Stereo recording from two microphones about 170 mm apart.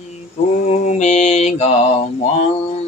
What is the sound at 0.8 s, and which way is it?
Mantra, 40° left (ahead or behind).